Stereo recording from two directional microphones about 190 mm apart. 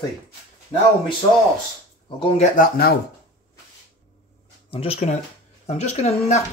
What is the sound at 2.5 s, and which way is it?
Speech, 50° left (ahead or behind).